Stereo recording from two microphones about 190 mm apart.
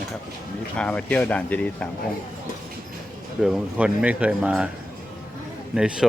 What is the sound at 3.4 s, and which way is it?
Speech, 5° right (ahead or behind).